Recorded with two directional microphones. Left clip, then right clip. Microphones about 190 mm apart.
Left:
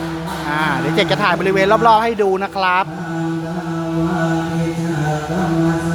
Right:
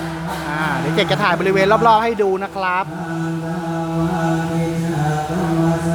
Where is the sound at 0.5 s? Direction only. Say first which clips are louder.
Left 3 dB; 20° left (ahead or behind).